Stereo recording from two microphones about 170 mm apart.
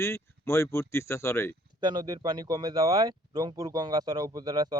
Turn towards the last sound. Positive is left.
turn(degrees=-25)  # may be behind; listen again after turning